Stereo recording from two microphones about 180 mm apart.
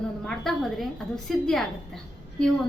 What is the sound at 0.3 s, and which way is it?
A woman's voice, centre (ahead or behind).